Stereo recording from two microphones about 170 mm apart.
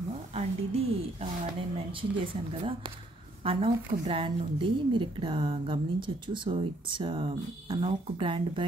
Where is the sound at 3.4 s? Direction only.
35° right (ahead or behind).